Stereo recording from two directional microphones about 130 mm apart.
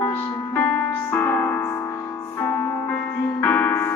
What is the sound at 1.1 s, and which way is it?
Music, 15° left (ahead or behind).